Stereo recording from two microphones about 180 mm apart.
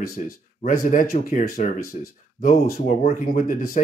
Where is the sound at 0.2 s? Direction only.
40° left (ahead or behind).